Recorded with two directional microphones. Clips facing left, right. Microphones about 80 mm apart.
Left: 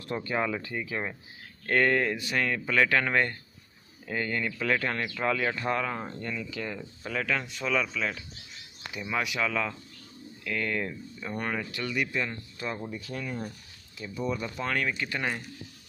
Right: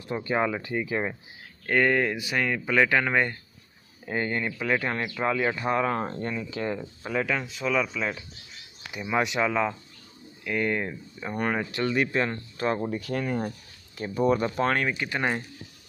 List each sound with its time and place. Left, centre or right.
0.0 s speech: centre
0.3 s speech: right
1.7 s speech: centre
4.0 s speech: right
5.9 s speech: right; by 7.3 s centre
7.3 s speech: centre; by 13.5 s right
13.9 s speech: right
14.8 s speech: right